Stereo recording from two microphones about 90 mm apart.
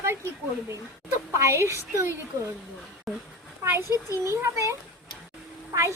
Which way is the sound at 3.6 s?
30° right (ahead or behind).